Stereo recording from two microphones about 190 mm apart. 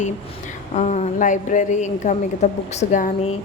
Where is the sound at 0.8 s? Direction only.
35° left (ahead or behind).